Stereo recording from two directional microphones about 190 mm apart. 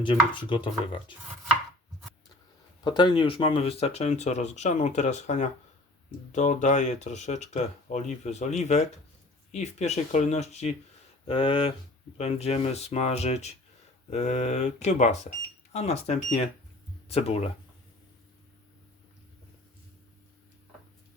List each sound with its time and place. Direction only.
0.0 s speech: 25° left (ahead or behind)
2.8 s speech: 25° left (ahead or behind)